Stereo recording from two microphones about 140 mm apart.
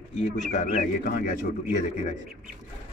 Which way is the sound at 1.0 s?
90° left.